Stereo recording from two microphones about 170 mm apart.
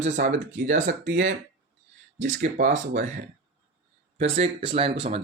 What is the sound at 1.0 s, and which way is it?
Speech, 90° right.